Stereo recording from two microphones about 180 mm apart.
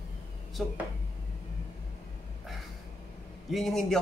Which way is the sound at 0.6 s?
Centre (ahead or behind).